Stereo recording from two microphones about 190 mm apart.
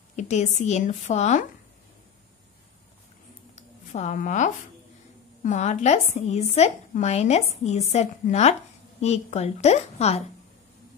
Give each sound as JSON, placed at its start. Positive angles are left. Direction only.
{"t": 0.1, "sound": "speech", "side_deg": 40}
{"t": 3.5, "sound": "a sound", "side_deg": 40}
{"t": 5.4, "sound": "speech", "side_deg": 40}